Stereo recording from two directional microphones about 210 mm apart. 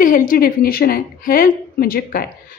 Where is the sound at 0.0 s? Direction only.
40° left (ahead or behind).